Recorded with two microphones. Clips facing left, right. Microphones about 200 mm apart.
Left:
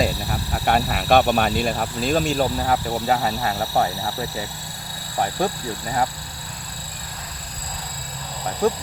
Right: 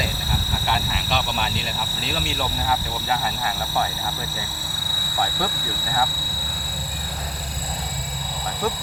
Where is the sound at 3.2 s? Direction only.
35° left (ahead or behind).